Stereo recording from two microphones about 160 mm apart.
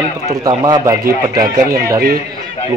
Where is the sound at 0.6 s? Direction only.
25° right (ahead or behind).